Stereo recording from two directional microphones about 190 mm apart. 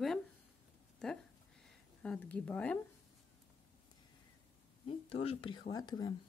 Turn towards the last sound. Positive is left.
turn(degrees=20)  # may be behind; listen again after turning